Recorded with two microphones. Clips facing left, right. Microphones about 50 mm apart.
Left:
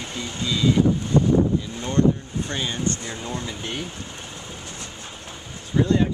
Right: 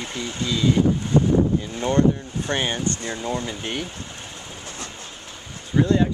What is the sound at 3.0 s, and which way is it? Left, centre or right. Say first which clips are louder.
Speech: right 4 dB; right.